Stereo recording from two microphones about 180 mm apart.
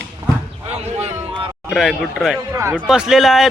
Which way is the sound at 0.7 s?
35° right (ahead or behind).